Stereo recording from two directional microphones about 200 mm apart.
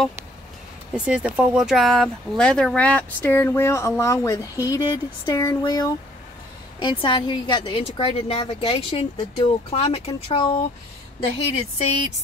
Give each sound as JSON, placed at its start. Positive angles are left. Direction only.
{"t": 0.9, "sound": "a woman's voice", "side_deg": -5}